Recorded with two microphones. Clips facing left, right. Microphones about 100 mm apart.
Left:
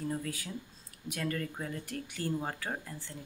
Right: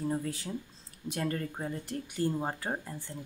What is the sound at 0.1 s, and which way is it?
Speech, 25° right (ahead or behind).